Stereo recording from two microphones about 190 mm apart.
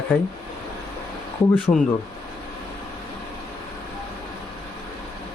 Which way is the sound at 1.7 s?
15° left (ahead or behind).